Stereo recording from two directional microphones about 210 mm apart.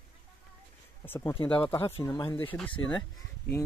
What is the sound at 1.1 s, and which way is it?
Speech, 15° left (ahead or behind).